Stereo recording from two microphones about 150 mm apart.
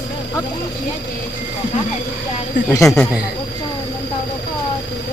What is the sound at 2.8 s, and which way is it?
Speech, centre (ahead or behind).